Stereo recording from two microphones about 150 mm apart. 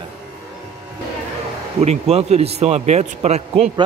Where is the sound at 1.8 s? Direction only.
45° right (ahead or behind).